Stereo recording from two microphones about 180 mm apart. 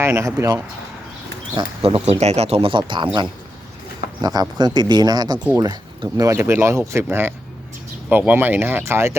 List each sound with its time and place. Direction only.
0.0 s speech: 15° right (ahead or behind)
1.5 s speech: 30° right (ahead or behind)
5.4 s speech: 10° right (ahead or behind)
5.6 s speech: 20° right (ahead or behind)